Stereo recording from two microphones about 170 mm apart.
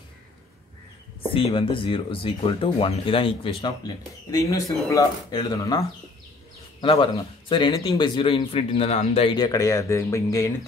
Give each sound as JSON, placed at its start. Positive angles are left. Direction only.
{"t": 1.3, "sound": "a man's voice", "side_deg": 30}